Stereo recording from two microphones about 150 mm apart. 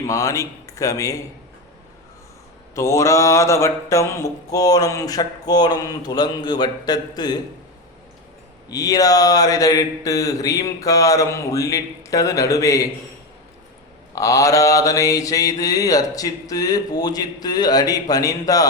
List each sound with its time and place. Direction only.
0.1 s mantra: 20° left (ahead or behind)
2.7 s mantra: 20° left (ahead or behind)
8.7 s mantra: 25° left (ahead or behind)
14.2 s mantra: 20° left (ahead or behind)